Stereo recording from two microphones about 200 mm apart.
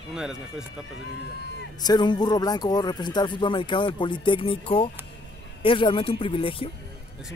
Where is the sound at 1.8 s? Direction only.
20° left (ahead or behind).